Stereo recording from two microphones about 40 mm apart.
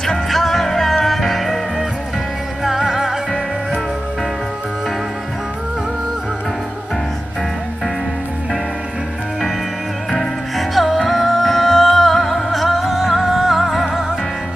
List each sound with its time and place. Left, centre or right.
0.3 s music: centre
10.7 s music: centre